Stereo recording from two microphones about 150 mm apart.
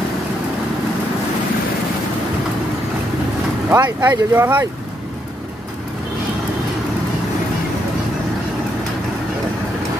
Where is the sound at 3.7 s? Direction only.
20° right (ahead or behind).